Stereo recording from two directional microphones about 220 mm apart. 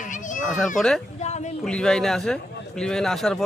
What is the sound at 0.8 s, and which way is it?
Speech, centre (ahead or behind).